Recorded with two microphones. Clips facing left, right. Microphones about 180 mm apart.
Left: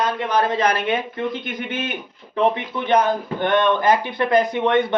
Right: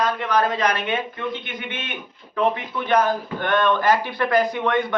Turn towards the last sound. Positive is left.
turn(degrees=25)  # may be behind; listen again after turning